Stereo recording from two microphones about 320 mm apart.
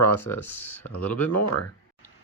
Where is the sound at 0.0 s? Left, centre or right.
Left.